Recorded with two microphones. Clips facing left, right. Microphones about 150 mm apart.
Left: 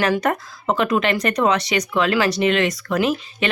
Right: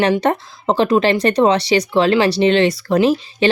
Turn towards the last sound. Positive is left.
turn(degrees=-30)  # may be behind; listen again after turning